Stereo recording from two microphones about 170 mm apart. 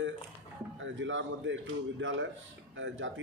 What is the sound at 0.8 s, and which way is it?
Speech, 90° right.